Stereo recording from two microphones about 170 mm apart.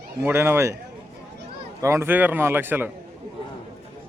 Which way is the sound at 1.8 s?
15° right (ahead or behind).